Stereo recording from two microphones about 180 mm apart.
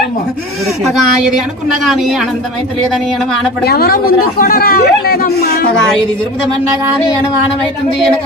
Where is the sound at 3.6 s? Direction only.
60° left (ahead or behind).